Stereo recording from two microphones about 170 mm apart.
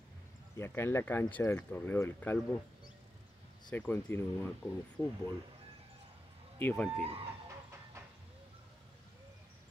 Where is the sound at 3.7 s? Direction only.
10° left (ahead or behind).